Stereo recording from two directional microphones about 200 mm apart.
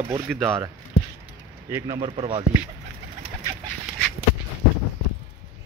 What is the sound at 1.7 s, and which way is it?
Speech, 20° right (ahead or behind).